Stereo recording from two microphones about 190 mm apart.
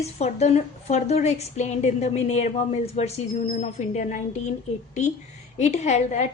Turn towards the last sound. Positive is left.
turn(degrees=35)  # may be behind; listen again after turning